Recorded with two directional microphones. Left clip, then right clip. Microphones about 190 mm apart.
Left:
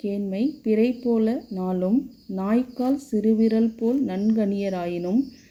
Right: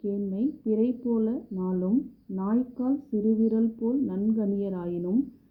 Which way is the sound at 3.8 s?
40° left (ahead or behind).